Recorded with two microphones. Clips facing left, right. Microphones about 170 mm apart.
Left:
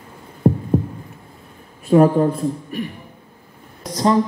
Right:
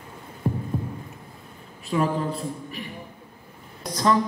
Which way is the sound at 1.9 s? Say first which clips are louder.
Left 11 dB; 50° left (ahead or behind).